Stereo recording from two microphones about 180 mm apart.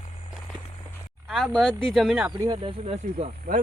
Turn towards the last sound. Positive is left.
turn(degrees=-45)  # may be behind; listen again after turning